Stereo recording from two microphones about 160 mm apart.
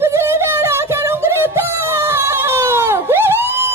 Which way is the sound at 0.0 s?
15° right (ahead or behind).